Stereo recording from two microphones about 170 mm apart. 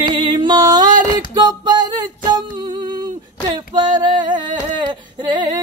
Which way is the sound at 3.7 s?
25° right (ahead or behind).